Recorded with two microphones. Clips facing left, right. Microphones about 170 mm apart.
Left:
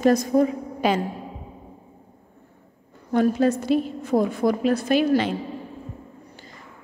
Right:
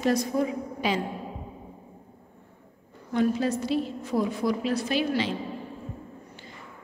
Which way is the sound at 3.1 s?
50° left (ahead or behind).